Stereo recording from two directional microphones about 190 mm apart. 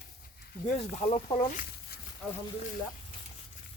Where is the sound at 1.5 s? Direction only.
45° left (ahead or behind).